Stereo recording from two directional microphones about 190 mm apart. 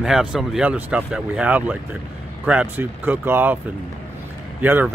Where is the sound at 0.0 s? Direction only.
5° right (ahead or behind).